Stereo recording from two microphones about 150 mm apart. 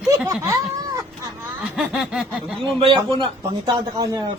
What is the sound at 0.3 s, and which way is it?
Cat, 25° right (ahead or behind).